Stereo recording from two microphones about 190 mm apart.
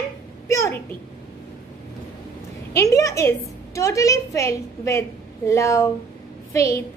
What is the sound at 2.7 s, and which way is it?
A woman's voice, 15° left (ahead or behind).